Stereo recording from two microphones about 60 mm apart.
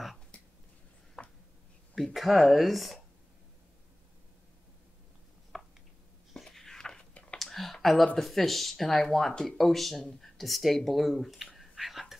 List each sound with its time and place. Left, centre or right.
1.2 s a sound: centre
2.1 s speech: centre
5.5 s a sound: centre
7.3 s computer keyboard: centre
8.2 s speech: centre
9.6 s speech: centre
11.5 s whispering: centre